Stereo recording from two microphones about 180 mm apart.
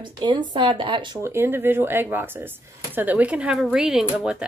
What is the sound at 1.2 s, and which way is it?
A woman's voice, 15° right (ahead or behind).